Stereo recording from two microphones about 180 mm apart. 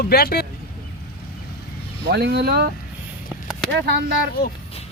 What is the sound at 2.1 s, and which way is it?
Speech, 70° right (ahead or behind).